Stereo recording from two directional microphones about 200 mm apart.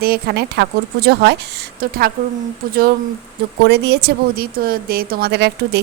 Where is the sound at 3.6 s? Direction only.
55° right (ahead or behind).